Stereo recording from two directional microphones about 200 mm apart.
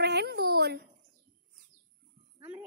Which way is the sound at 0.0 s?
55° right (ahead or behind).